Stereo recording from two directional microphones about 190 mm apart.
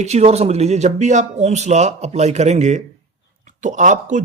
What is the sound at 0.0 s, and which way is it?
Speech, 35° right (ahead or behind).